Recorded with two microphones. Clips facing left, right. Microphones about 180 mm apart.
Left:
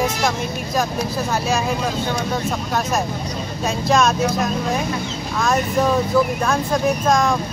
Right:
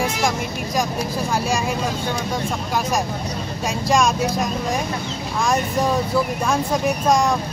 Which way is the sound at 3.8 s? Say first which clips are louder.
Left 1 dB; 10° right (ahead or behind).